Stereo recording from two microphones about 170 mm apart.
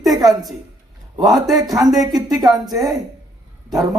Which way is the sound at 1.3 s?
Centre (ahead or behind).